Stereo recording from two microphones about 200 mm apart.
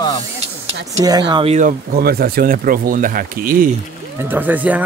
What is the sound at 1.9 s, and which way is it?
Speech, 50° right (ahead or behind).